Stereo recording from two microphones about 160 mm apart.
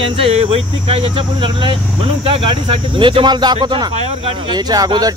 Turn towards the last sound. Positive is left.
turn(degrees=-25)  # may be behind; listen again after turning